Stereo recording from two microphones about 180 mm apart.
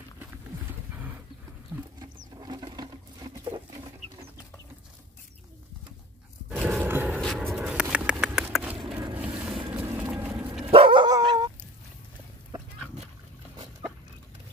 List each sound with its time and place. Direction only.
1.7 s wild animals: 10° right (ahead or behind)
2.3 s patter: 25° right (ahead or behind)
6.5 s a sound: 5° right (ahead or behind)
7.1 s vehicle: centre (ahead or behind)
7.8 s a sound: 10° right (ahead or behind)
9.1 s boat: 5° right (ahead or behind)
10.6 s dog: 30° right (ahead or behind)